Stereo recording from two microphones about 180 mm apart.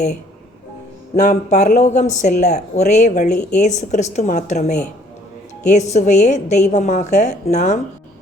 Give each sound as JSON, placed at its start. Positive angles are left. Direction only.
{"t": 1.1, "sound": "speech", "side_deg": 40}